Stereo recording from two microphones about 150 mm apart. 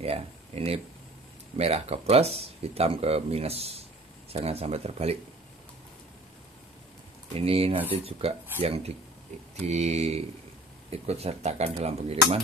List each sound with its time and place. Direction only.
0.0 s speech: 40° right (ahead or behind)
7.3 s speech: 40° right (ahead or behind)